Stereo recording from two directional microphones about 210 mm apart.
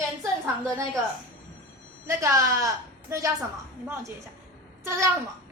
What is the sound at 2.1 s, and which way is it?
A woman's voice, 15° right (ahead or behind).